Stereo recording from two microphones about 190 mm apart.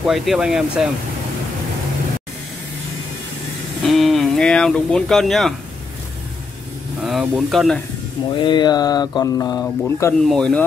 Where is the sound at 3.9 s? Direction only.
Centre (ahead or behind).